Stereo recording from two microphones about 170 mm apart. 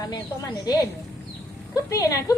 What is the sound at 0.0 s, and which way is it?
Speech, 25° left (ahead or behind).